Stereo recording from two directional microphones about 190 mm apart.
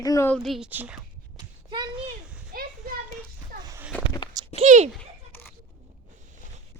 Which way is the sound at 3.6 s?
20° right (ahead or behind).